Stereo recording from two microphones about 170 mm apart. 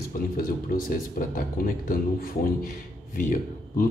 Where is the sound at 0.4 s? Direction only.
55° left (ahead or behind).